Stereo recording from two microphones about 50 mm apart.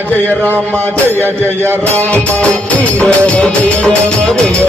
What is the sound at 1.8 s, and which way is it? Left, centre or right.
Music, left.